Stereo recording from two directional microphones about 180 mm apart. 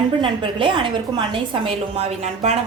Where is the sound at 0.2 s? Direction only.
30° right (ahead or behind).